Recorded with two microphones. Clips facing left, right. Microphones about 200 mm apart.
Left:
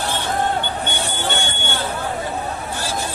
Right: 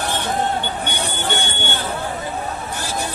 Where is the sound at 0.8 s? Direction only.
15° right (ahead or behind).